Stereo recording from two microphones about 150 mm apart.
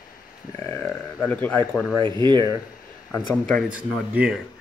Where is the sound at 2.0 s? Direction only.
30° right (ahead or behind).